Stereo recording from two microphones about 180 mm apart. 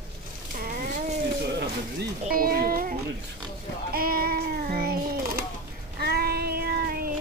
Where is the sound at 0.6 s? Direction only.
55° right (ahead or behind).